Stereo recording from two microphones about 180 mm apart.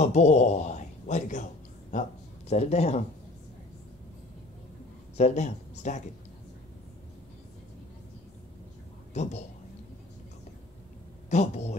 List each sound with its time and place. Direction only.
0.0 s speech: 40° left (ahead or behind)
5.1 s speech: 40° left (ahead or behind)
9.1 s speech: 40° left (ahead or behind)
11.2 s a woman's voice: 40° left (ahead or behind)